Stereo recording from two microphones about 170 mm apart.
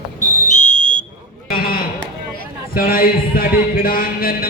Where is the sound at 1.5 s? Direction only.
60° left (ahead or behind).